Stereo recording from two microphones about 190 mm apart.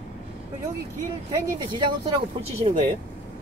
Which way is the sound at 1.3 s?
20° right (ahead or behind).